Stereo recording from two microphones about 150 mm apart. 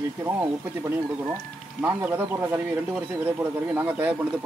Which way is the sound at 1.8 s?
15° right (ahead or behind).